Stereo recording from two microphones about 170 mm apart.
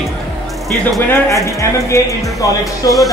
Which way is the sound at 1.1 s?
20° left (ahead or behind).